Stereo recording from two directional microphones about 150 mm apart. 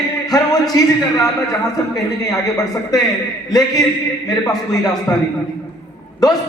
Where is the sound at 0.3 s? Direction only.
25° left (ahead or behind).